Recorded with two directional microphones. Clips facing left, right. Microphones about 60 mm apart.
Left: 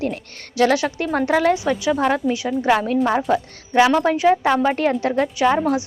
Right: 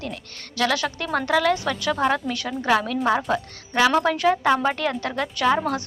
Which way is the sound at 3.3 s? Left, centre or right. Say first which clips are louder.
Left 5 dB; centre.